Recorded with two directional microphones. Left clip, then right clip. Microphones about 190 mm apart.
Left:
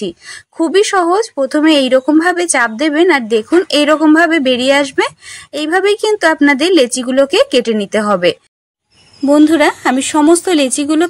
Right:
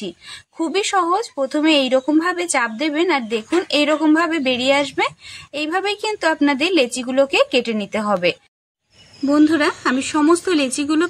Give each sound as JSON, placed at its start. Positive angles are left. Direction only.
{"t": 0.0, "sound": "a woman's voice", "side_deg": 25}
{"t": 9.3, "sound": "speech", "side_deg": 40}